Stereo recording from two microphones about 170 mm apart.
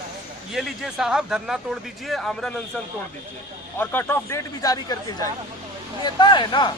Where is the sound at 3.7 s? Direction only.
15° left (ahead or behind).